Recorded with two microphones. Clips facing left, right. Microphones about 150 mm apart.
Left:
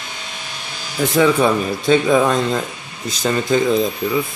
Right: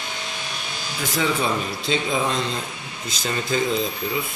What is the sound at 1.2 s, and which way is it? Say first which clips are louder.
Speech: left 9 dB; 65° left (ahead or behind).